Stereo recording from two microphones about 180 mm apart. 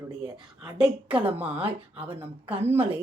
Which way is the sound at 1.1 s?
10° right (ahead or behind).